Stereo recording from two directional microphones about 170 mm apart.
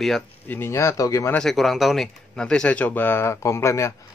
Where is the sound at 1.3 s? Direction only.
Centre (ahead or behind).